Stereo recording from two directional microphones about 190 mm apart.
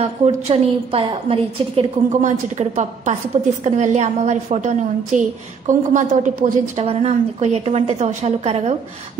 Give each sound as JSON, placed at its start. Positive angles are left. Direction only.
{"t": 0.0, "sound": "a woman's voice", "side_deg": -30}